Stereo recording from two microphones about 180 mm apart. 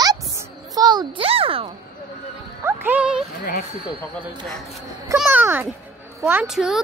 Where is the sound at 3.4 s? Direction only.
55° left (ahead or behind).